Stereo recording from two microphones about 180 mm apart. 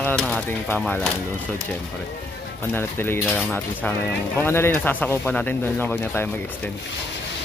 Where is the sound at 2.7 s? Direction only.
10° left (ahead or behind).